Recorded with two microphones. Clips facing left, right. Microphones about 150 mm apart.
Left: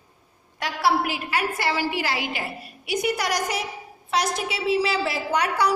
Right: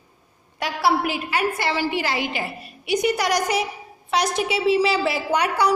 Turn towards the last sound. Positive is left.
turn(degrees=-5)  # may be behind; listen again after turning